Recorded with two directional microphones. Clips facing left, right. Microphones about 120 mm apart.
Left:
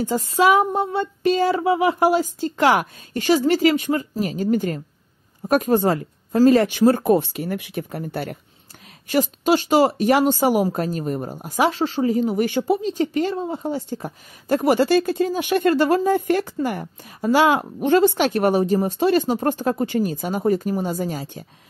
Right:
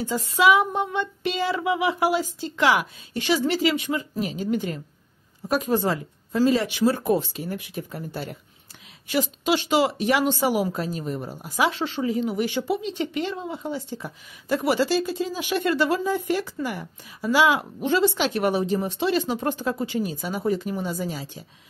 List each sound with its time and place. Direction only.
0.0 s speech: 40° left (ahead or behind); by 8.4 s 60° left (ahead or behind)
9.1 s speech: 45° left (ahead or behind)